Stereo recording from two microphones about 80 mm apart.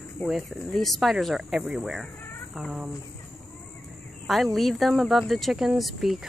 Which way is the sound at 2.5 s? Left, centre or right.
Centre.